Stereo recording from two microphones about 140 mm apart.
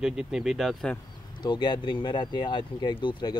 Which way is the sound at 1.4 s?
30° left (ahead or behind).